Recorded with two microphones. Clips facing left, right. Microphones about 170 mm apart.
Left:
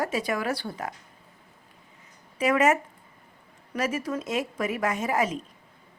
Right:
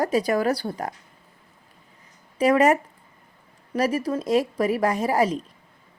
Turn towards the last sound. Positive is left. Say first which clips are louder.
# right 5 dB
turn(degrees=-35)  # may be behind; listen again after turning